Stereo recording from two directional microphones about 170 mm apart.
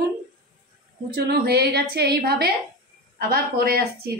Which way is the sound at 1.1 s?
65° right (ahead or behind).